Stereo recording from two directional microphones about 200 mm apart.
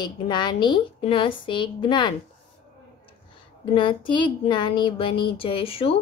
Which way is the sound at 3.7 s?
25° left (ahead or behind).